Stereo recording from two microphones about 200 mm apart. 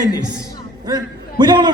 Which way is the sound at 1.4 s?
20° right (ahead or behind).